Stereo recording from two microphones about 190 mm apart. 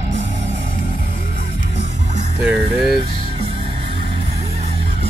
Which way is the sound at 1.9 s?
40° right (ahead or behind).